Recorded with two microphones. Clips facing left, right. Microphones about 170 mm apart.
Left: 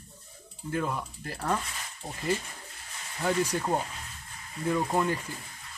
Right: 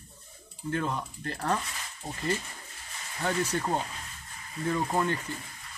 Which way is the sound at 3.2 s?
10° left (ahead or behind).